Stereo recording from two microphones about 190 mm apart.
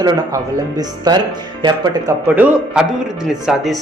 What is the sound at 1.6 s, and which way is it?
Speech, 25° right (ahead or behind).